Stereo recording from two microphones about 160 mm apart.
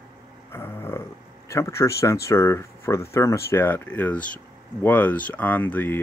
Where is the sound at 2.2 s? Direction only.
15° left (ahead or behind).